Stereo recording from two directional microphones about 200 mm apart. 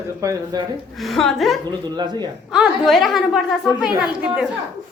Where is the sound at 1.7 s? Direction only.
20° right (ahead or behind).